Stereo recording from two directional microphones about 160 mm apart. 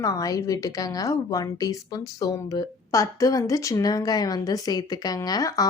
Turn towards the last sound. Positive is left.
turn(degrees=20)  # may be behind; listen again after turning